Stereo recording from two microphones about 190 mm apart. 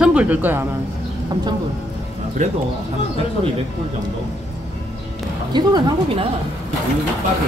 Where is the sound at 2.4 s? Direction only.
40° right (ahead or behind).